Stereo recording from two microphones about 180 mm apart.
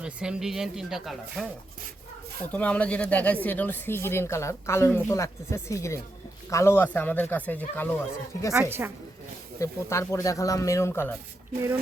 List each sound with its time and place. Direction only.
0.0 s speech: 5° right (ahead or behind)
2.5 s speech: 10° left (ahead or behind)
9.6 s speech: 15° left (ahead or behind)